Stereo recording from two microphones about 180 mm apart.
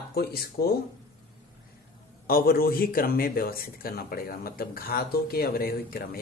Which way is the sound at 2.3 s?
55° left (ahead or behind).